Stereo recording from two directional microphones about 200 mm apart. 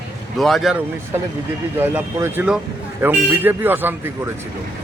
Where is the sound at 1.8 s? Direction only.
10° right (ahead or behind).